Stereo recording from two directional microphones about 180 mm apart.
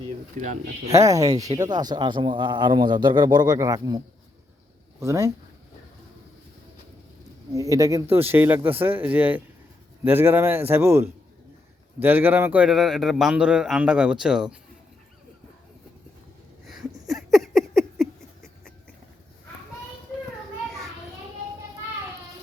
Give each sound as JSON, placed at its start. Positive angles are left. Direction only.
{"t": 0.3, "sound": "speech", "side_deg": -45}
{"t": 0.9, "sound": "speech", "side_deg": -20}
{"t": 7.5, "sound": "a man's voice", "side_deg": -15}
{"t": 16.6, "sound": "a sound", "side_deg": 0}